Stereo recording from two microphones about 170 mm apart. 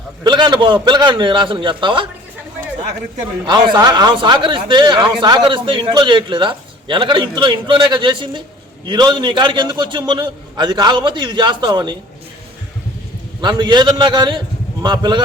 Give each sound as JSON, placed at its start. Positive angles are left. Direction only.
{"t": 0.3, "sound": "speech", "side_deg": -25}
{"t": 3.4, "sound": "speech", "side_deg": -25}
{"t": 13.4, "sound": "speech", "side_deg": -25}